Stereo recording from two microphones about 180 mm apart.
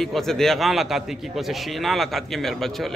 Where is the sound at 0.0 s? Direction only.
Centre (ahead or behind).